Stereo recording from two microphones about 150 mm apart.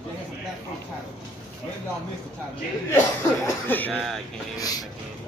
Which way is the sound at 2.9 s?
15° left (ahead or behind).